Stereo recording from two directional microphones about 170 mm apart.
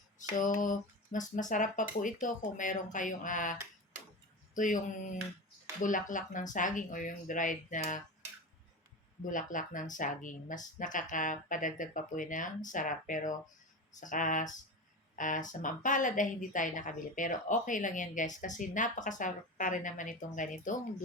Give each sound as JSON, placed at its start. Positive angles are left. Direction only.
{"t": 0.2, "sound": "a woman's voice", "side_deg": 50}
{"t": 5.8, "sound": "a woman's voice", "side_deg": 50}
{"t": 9.2, "sound": "a woman's voice", "side_deg": 50}